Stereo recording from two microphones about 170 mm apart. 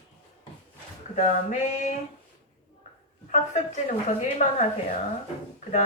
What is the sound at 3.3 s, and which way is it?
Speech, 45° left (ahead or behind).